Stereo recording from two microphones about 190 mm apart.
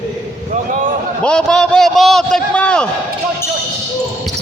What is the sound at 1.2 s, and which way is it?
A man's voice, 5° left (ahead or behind).